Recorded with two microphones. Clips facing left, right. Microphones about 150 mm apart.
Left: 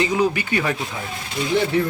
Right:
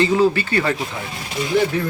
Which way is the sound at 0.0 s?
15° left (ahead or behind).